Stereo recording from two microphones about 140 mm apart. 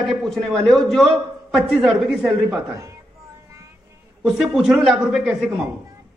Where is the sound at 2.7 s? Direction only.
20° right (ahead or behind).